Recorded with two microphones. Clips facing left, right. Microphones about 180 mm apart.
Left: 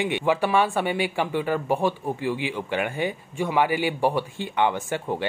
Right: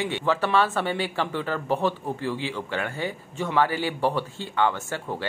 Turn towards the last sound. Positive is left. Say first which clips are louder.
# left 4 dB
turn(degrees=15)  # may be behind; listen again after turning